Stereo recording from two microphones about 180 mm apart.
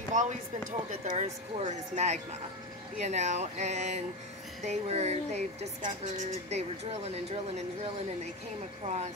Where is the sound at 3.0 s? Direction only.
40° right (ahead or behind).